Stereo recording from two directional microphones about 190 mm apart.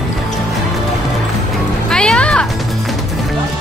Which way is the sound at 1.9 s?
5° left (ahead or behind).